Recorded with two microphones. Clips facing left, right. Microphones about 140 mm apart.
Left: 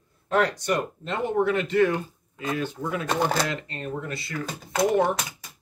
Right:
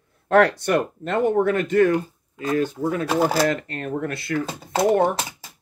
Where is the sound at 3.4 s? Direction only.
50° right (ahead or behind).